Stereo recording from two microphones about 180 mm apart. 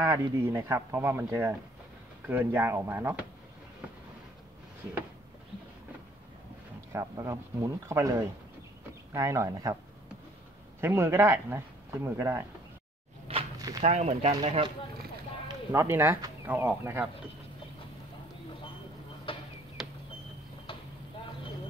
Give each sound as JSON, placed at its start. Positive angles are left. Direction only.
{"t": 0.0, "sound": "speech", "side_deg": -15}
{"t": 6.9, "sound": "speech", "side_deg": -15}
{"t": 10.8, "sound": "speech", "side_deg": -10}
{"t": 13.6, "sound": "walk", "side_deg": -20}
{"t": 13.8, "sound": "speech", "side_deg": -40}
{"t": 15.4, "sound": "speech", "side_deg": -15}
{"t": 19.3, "sound": "a sound", "side_deg": 30}